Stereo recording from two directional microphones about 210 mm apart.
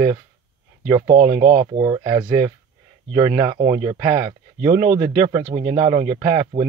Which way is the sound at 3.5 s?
35° right (ahead or behind).